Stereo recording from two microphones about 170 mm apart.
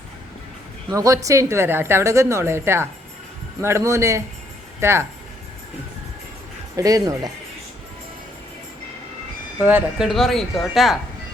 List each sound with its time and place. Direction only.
0.9 s a woman's voice: 20° right (ahead or behind)
6.7 s speech: 20° right (ahead or behind)
9.6 s speech: 10° right (ahead or behind)